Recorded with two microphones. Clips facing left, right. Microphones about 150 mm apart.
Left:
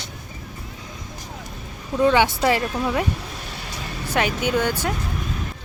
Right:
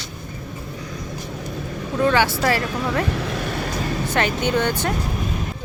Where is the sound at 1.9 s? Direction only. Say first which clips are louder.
Left 1 dB; 20° left (ahead or behind).